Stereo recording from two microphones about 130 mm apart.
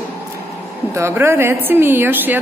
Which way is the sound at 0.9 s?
20° right (ahead or behind).